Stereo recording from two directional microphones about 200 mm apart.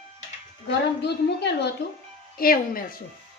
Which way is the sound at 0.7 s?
55° left (ahead or behind).